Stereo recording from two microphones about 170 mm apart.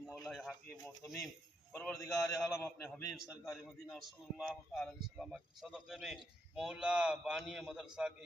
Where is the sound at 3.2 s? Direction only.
Centre (ahead or behind).